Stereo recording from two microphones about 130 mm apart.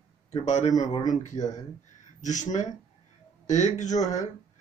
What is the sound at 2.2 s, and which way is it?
Speech, 70° left (ahead or behind).